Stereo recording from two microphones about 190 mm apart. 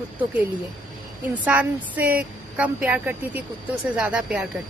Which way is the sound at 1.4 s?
10° right (ahead or behind).